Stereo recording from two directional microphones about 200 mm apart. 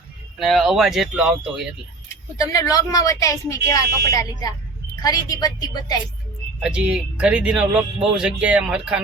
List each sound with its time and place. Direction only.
0.3 s speech: centre (ahead or behind)
2.4 s a woman's voice: 15° left (ahead or behind)
6.6 s speech: 5° right (ahead or behind)